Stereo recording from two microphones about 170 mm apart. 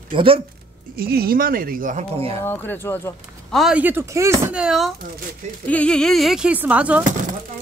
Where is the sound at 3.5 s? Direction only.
5° right (ahead or behind).